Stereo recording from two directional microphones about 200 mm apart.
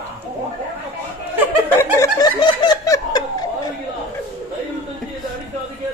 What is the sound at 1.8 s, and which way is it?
Laughter, 15° left (ahead or behind).